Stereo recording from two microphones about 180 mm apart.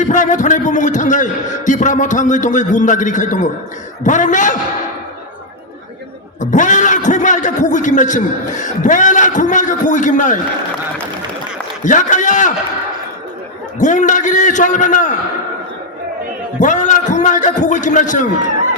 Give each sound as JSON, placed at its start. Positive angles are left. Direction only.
{"t": 0.0, "sound": "a man's voice", "side_deg": 45}
{"t": 6.4, "sound": "a man's voice", "side_deg": 45}
{"t": 11.8, "sound": "a man's voice", "side_deg": 45}
{"t": 13.7, "sound": "a man's voice", "side_deg": 45}
{"t": 16.6, "sound": "a man's voice", "side_deg": 45}